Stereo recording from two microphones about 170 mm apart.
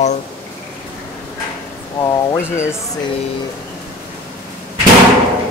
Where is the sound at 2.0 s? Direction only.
20° left (ahead or behind).